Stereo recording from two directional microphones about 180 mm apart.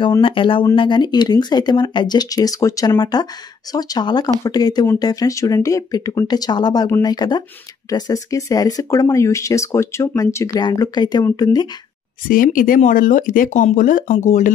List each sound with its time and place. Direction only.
0.0 s speech: 30° left (ahead or behind)
12.3 s speech: 50° left (ahead or behind)